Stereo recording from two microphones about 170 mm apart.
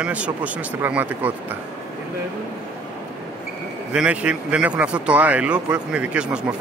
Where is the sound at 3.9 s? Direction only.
5° right (ahead or behind).